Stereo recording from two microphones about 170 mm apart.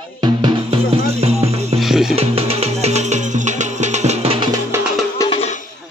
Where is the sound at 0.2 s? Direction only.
25° right (ahead or behind).